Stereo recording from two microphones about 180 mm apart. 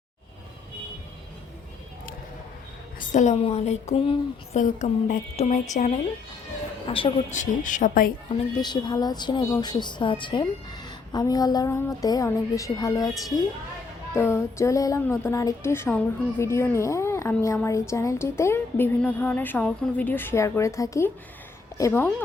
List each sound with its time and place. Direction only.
3.1 s a woman's voice: 40° left (ahead or behind)
4.6 s a woman's voice: 45° left (ahead or behind)
6.8 s a woman's voice: 30° left (ahead or behind)
7.3 s speech: 45° left (ahead or behind)
8.6 s a woman's voice: 25° left (ahead or behind)
14.1 s a woman's voice: 15° left (ahead or behind)